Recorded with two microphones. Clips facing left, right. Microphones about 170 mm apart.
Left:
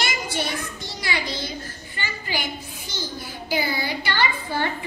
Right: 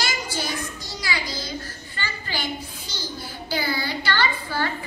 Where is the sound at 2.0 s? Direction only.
15° left (ahead or behind).